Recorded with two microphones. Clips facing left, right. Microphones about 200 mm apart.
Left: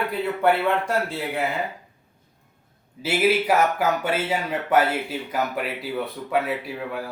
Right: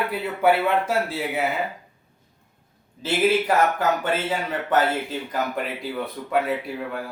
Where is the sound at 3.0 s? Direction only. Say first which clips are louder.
Even; 10° left (ahead or behind).